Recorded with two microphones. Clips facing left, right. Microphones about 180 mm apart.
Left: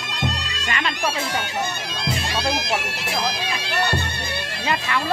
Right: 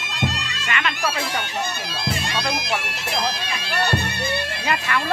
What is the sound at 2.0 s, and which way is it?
Bagpipes, 5° left (ahead or behind).